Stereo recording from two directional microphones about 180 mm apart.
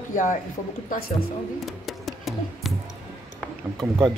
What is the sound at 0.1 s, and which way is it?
Speech, 45° left (ahead or behind).